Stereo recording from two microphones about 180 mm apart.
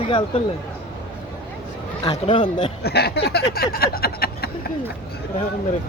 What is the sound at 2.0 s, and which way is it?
Speech, 30° left (ahead or behind).